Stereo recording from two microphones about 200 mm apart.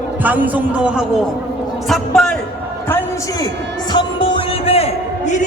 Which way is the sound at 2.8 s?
15° left (ahead or behind).